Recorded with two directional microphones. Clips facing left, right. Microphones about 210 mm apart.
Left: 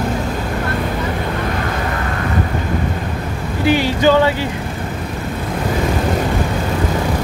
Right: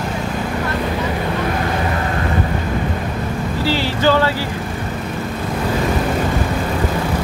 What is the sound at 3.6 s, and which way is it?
Vehicle, 15° left (ahead or behind).